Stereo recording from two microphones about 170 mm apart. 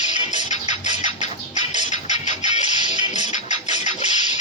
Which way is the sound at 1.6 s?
25° right (ahead or behind).